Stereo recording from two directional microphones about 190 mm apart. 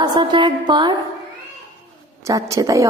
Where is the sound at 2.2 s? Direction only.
15° right (ahead or behind).